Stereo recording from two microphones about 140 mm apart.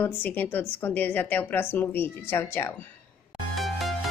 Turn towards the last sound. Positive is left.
turn(degrees=0)  # may be behind; listen again after turning